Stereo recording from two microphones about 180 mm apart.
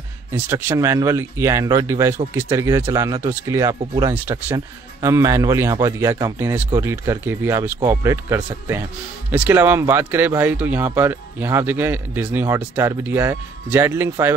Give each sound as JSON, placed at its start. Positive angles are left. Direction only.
{"t": 0.3, "sound": "speech", "side_deg": -10}